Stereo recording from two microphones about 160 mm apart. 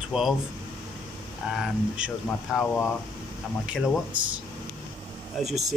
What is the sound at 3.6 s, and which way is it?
Speech, 5° right (ahead or behind).